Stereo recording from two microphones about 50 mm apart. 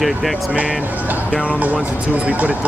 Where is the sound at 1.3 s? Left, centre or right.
Right.